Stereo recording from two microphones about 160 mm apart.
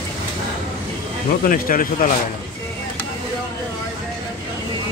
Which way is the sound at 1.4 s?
60° left (ahead or behind).